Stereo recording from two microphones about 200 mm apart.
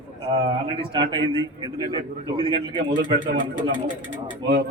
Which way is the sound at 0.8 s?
25° right (ahead or behind).